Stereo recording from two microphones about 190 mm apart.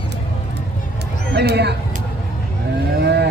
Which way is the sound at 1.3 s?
60° right (ahead or behind).